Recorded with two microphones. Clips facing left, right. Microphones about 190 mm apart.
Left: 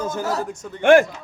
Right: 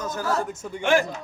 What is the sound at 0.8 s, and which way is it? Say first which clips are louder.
Speech: left 8 dB; 55° left (ahead or behind).